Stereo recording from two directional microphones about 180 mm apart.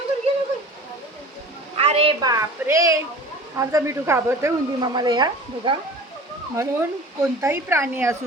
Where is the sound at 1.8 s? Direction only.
35° right (ahead or behind).